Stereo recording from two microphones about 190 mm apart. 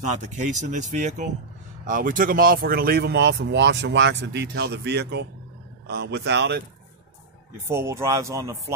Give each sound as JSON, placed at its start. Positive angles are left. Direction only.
{"t": 0.2, "sound": "speech", "side_deg": -40}
{"t": 7.6, "sound": "speech", "side_deg": -15}